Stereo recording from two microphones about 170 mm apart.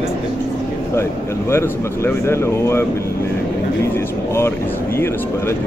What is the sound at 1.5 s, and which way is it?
Speech, 15° left (ahead or behind).